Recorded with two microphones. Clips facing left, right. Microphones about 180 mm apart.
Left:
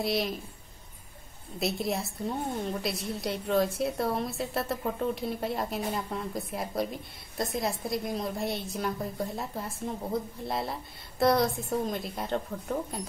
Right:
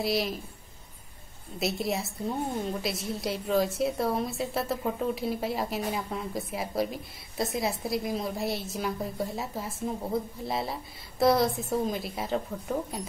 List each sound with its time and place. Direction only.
0.0 s a woman's voice: centre (ahead or behind)
1.6 s a woman's voice: centre (ahead or behind)